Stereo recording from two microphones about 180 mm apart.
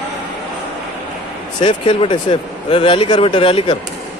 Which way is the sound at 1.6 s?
30° left (ahead or behind).